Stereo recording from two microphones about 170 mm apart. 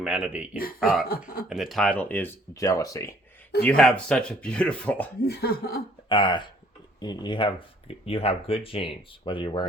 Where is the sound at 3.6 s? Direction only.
5° left (ahead or behind).